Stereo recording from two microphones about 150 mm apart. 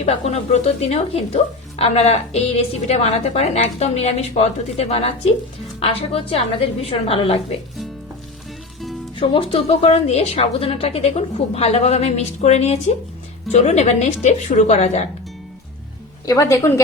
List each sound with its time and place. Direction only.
0.0 s a woman's voice: 45° left (ahead or behind)
9.1 s speech: 35° left (ahead or behind)
16.2 s a woman's voice: 20° left (ahead or behind)